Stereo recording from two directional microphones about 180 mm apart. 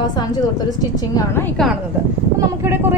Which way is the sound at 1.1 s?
10° left (ahead or behind).